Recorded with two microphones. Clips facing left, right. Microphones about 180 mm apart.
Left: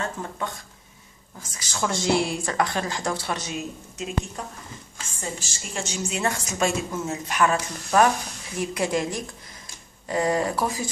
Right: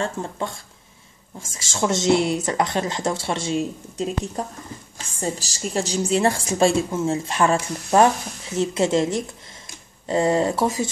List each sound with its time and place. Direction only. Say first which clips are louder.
0.0 s a woman's voice: right 4 dB; 30° right (ahead or behind)